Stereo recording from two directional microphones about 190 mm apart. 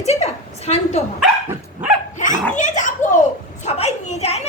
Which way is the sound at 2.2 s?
40° left (ahead or behind).